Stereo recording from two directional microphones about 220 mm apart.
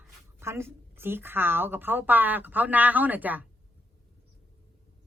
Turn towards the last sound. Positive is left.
turn(degrees=-5)  # may be behind; listen again after turning